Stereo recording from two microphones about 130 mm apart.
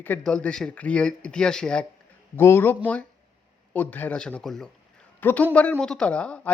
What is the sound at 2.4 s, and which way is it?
A man's voice, 15° left (ahead or behind).